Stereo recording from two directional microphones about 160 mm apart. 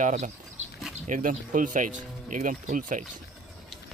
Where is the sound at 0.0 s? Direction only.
50° right (ahead or behind).